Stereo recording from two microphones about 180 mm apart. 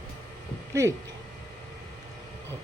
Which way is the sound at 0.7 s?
15° right (ahead or behind).